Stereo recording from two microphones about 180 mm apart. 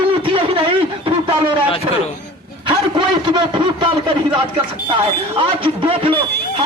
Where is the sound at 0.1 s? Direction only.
30° right (ahead or behind).